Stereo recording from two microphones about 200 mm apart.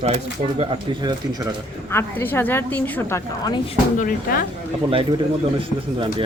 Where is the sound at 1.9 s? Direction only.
10° left (ahead or behind).